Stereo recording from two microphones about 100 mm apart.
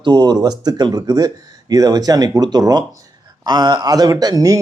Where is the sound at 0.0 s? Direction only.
50° right (ahead or behind).